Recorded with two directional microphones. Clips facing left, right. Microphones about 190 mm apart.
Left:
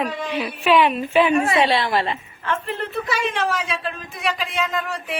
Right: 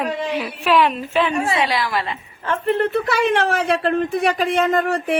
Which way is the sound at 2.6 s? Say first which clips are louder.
Right 8 dB; 65° right (ahead or behind).